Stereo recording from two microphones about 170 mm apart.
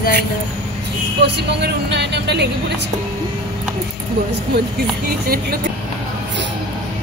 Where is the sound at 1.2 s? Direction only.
90° right.